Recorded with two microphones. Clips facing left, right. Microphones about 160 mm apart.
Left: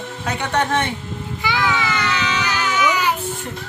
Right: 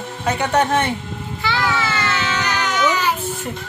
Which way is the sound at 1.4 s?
15° left (ahead or behind).